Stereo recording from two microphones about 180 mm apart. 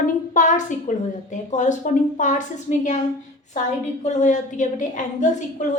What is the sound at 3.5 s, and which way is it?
A woman's voice, 40° left (ahead or behind).